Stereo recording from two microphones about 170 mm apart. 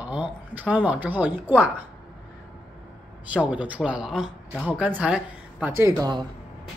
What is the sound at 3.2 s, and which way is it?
Speech, 10° right (ahead or behind).